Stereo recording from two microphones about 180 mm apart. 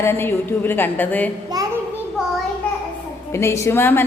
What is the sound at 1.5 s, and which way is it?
Speech, 20° right (ahead or behind).